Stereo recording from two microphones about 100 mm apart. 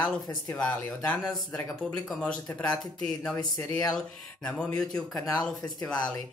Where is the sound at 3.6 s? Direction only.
35° left (ahead or behind).